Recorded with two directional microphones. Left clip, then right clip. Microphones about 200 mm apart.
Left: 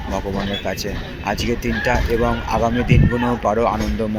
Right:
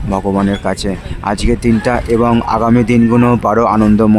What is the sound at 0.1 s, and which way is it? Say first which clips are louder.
Speech: right 9 dB; 35° right (ahead or behind).